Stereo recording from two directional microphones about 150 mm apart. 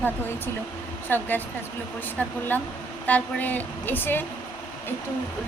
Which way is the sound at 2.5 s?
10° left (ahead or behind).